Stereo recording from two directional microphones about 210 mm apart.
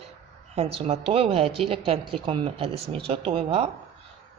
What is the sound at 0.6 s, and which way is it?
Speech, 30° right (ahead or behind).